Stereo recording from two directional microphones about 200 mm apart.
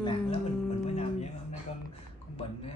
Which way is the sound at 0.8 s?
35° left (ahead or behind).